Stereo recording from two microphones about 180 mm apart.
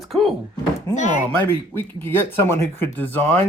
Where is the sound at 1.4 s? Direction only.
10° left (ahead or behind).